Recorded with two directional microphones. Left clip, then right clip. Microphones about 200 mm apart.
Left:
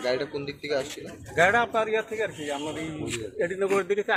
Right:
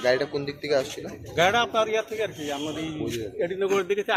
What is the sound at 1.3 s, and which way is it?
Speech, centre (ahead or behind).